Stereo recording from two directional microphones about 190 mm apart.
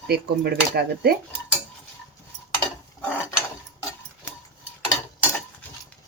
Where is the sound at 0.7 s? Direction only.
55° right (ahead or behind).